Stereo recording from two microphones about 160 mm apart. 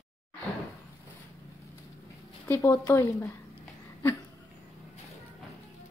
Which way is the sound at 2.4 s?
15° left (ahead or behind).